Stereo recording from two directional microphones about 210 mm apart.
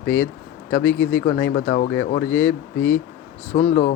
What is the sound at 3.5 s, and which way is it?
Speech, 40° left (ahead or behind).